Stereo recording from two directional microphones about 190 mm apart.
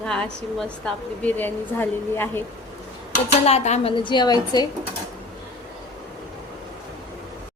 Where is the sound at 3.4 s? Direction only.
35° left (ahead or behind).